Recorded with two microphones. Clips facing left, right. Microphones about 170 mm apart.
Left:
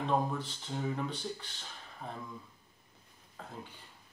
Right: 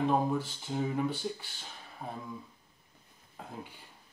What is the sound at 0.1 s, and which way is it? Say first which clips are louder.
Speech: right 3 dB; 10° right (ahead or behind).